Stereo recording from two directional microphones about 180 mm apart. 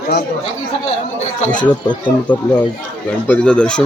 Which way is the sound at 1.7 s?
25° left (ahead or behind).